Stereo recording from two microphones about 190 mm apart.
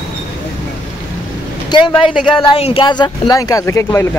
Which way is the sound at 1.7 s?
25° left (ahead or behind).